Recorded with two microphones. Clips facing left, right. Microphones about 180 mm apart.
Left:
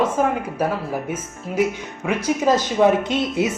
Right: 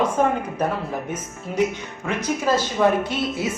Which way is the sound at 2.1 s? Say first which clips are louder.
Left 4 dB; 10° left (ahead or behind).